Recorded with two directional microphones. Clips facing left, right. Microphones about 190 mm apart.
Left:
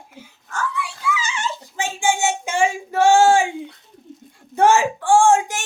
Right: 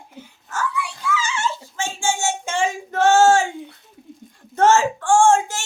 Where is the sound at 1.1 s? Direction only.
15° left (ahead or behind).